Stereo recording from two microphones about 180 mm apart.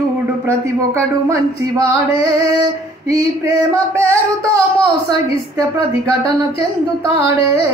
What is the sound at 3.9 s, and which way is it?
Speech, 15° right (ahead or behind).